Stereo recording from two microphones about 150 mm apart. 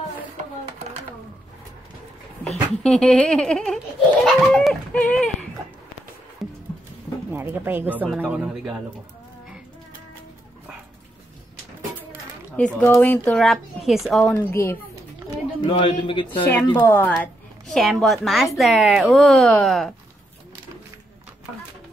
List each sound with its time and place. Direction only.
2.4 s speech: 5° left (ahead or behind)
6.4 s music: centre (ahead or behind)
7.3 s speech: 15° right (ahead or behind)
12.5 s a woman's voice: 10° left (ahead or behind)
14.3 s a woman's voice: 15° left (ahead or behind)
15.7 s a man's voice: 30° left (ahead or behind)
16.8 s a woman's voice: 15° left (ahead or behind)
17.7 s speech: centre (ahead or behind)